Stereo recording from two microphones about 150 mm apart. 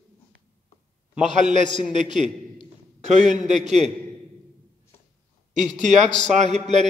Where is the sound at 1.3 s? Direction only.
55° right (ahead or behind).